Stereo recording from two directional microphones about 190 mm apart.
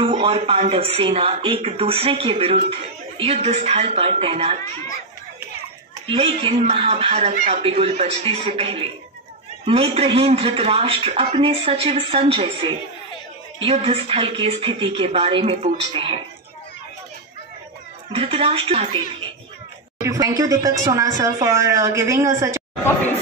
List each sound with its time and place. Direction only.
0.0 s speech: 30° right (ahead or behind)
6.0 s a man's voice: 25° right (ahead or behind)
18.1 s a man's voice: 30° right (ahead or behind)
20.0 s speech: 20° right (ahead or behind)